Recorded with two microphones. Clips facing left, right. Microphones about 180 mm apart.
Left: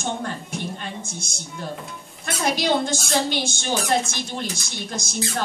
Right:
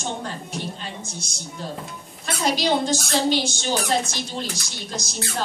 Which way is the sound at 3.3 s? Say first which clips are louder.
Right 2 dB; 50° left (ahead or behind).